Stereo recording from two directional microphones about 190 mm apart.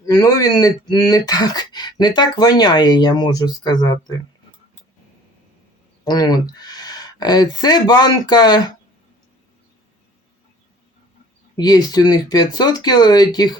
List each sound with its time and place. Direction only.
0.1 s speech: 20° left (ahead or behind)
6.1 s speech: 20° left (ahead or behind)
11.5 s speech: 20° left (ahead or behind)